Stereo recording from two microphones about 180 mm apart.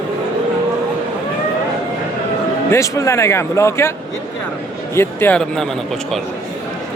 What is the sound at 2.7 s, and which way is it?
Speech, 15° left (ahead or behind).